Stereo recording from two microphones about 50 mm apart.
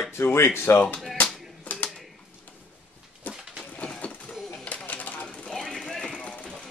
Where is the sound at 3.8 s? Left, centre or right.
Left.